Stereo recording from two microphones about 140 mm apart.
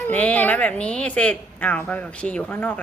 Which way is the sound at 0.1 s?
10° left (ahead or behind).